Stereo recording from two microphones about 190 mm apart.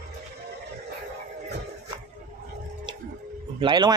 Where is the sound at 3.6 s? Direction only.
25° right (ahead or behind).